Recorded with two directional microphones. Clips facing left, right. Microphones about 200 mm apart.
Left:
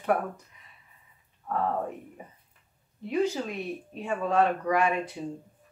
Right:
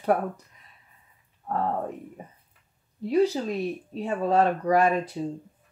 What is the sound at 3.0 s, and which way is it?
Speech, 35° right (ahead or behind).